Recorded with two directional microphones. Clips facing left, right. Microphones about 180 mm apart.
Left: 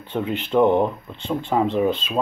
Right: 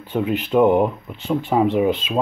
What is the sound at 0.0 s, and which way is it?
Speech, 5° right (ahead or behind).